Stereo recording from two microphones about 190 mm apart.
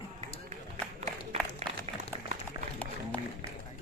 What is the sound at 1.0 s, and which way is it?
Applause, 35° right (ahead or behind).